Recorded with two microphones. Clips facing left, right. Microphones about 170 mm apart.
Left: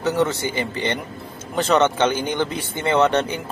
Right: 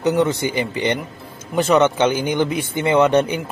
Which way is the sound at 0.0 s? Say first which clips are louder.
Right 3 dB; 15° right (ahead or behind).